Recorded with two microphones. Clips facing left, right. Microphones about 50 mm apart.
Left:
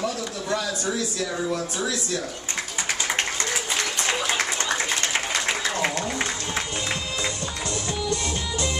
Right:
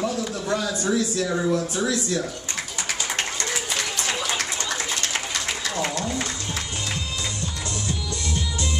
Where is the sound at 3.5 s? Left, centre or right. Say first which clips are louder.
Left 1 dB; centre.